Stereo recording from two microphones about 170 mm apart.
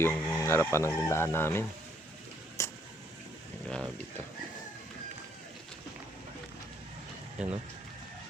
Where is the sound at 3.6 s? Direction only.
5° left (ahead or behind).